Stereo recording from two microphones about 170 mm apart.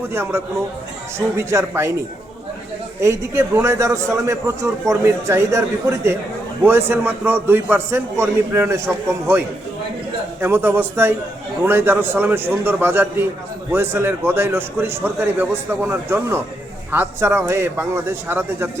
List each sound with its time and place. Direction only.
0.1 s a man's voice: 15° right (ahead or behind)
3.0 s a man's voice: 15° right (ahead or behind)
10.4 s a man's voice: 15° right (ahead or behind)